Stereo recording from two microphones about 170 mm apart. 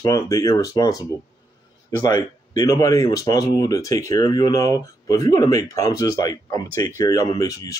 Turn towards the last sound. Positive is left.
turn(degrees=20)  # may be behind; listen again after turning